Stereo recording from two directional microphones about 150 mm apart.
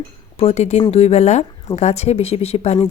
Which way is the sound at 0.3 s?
45° left (ahead or behind).